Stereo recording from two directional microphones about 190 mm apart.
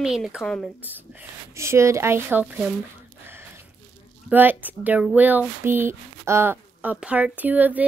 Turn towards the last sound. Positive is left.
turn(degrees=-10)  # may be behind; listen again after turning